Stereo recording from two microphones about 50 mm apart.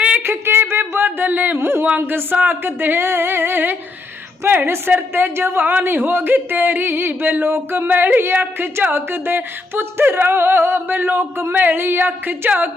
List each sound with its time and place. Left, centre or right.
0.2 s a sound: right
1.6 s a man's voice: right
4.4 s speech: right
4.9 s a man's voice: right